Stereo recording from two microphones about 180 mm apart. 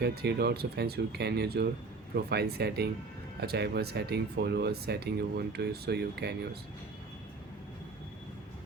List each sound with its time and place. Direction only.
0.0 s speech: 60° right (ahead or behind)